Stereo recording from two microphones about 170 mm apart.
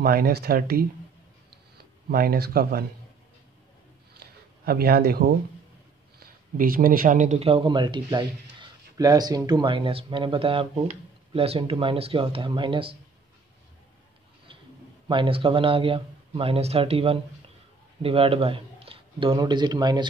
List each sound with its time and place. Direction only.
0.0 s speech: 65° right (ahead or behind)
2.0 s speech: 65° right (ahead or behind)
4.2 s a sound: 65° right (ahead or behind)
6.1 s a man's voice: 55° right (ahead or behind); by 12.9 s 30° right (ahead or behind)
15.0 s a man's voice: 30° right (ahead or behind)